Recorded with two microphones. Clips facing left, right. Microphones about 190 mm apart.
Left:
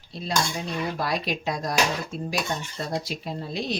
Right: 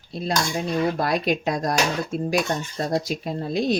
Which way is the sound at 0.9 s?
50° right (ahead or behind).